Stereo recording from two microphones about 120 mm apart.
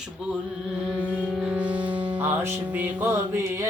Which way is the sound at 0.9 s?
10° right (ahead or behind).